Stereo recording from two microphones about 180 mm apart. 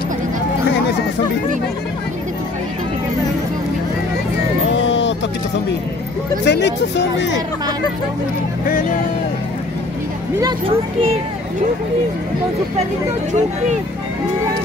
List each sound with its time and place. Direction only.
4.6 s music: 85° left
6.4 s speech: 75° left (ahead or behind)